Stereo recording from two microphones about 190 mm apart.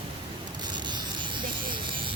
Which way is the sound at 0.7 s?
25° right (ahead or behind).